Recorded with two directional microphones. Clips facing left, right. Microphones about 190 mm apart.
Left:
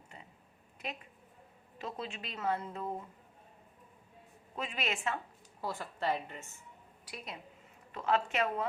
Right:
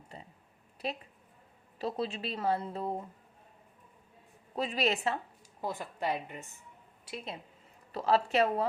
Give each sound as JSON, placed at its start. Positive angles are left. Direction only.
{"t": 0.1, "sound": "a sound", "side_deg": -35}
{"t": 0.8, "sound": "speech", "side_deg": -35}
{"t": 4.5, "sound": "speech", "side_deg": -35}
{"t": 5.6, "sound": "a woman's voice", "side_deg": -20}